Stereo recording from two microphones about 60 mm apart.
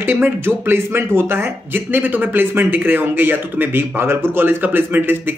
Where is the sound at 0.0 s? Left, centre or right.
Right.